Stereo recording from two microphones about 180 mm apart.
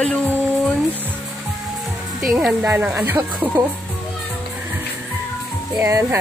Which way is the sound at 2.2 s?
5° right (ahead or behind).